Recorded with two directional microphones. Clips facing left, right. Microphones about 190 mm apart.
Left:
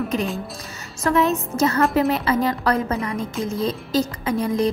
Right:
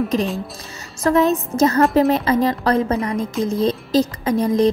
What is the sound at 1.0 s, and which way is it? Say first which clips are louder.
Speech: right 3 dB; 35° right (ahead or behind).